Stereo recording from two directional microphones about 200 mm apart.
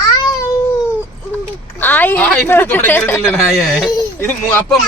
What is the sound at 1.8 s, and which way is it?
Speech, 10° left (ahead or behind).